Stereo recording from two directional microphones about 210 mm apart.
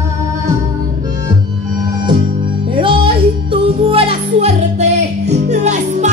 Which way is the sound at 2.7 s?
25° right (ahead or behind).